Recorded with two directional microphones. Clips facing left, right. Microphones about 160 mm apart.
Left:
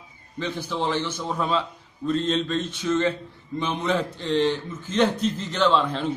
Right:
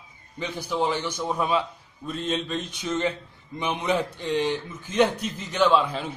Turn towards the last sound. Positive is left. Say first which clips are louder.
# even
turn(degrees=-10)  # may be behind; listen again after turning